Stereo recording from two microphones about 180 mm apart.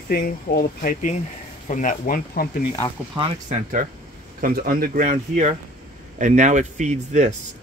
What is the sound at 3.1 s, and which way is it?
Speech, 25° right (ahead or behind).